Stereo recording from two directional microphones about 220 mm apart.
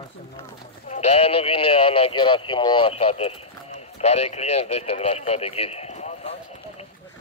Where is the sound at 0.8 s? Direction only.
30° left (ahead or behind).